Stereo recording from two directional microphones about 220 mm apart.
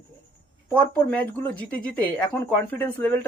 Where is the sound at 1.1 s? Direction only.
5° left (ahead or behind).